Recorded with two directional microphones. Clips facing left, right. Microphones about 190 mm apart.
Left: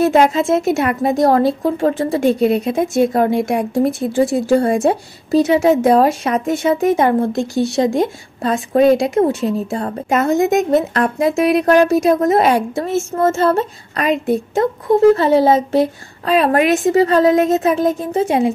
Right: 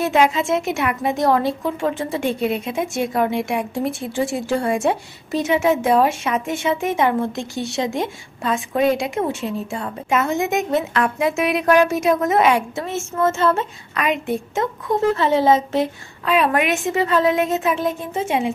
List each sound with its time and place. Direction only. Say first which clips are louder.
0.0 s a woman's voice: left 5 dB; 40° left (ahead or behind)